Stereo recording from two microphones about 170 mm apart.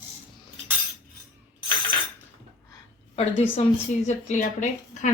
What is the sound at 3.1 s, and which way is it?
Speech, 35° left (ahead or behind).